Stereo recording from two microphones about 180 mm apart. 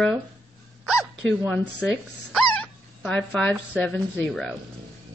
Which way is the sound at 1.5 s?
5° left (ahead or behind).